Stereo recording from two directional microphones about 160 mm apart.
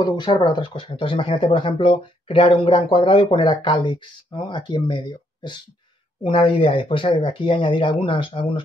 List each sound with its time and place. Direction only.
0.0 s speech: 30° left (ahead or behind)